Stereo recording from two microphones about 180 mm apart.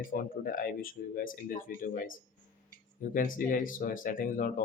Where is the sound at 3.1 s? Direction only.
50° left (ahead or behind).